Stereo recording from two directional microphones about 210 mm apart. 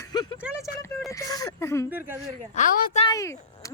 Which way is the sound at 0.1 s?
20° left (ahead or behind).